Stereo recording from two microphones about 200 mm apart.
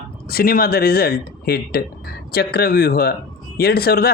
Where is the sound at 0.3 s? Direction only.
50° left (ahead or behind).